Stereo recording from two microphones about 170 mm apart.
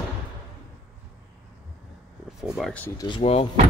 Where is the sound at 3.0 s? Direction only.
30° left (ahead or behind).